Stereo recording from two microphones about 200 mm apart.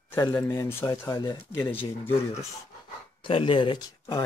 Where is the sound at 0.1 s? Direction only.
20° left (ahead or behind).